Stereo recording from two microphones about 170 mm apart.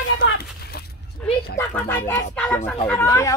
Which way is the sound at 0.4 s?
65° left (ahead or behind).